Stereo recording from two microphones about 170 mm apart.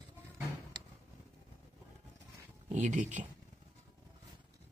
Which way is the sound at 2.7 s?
45° right (ahead or behind).